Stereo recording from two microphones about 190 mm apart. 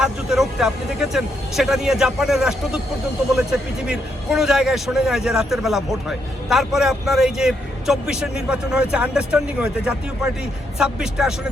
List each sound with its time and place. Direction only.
0.0 s a man's voice: centre (ahead or behind)